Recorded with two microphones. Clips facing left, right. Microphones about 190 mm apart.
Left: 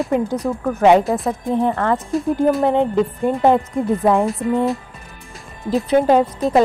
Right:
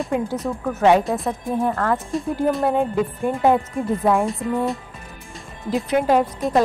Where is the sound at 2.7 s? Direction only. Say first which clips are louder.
Left 4 dB; 20° left (ahead or behind).